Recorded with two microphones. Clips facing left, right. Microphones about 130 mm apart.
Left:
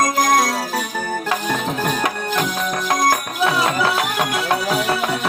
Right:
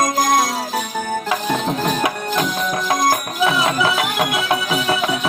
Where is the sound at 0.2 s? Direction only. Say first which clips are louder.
Even; 10° right (ahead or behind).